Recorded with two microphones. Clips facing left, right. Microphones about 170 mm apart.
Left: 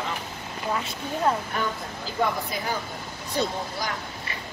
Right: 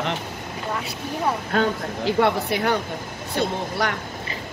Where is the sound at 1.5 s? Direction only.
75° right (ahead or behind).